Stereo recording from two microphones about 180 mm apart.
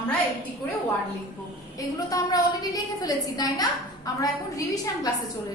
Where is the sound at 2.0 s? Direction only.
20° left (ahead or behind).